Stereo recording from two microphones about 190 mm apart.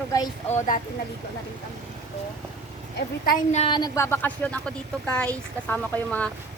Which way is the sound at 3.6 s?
25° left (ahead or behind).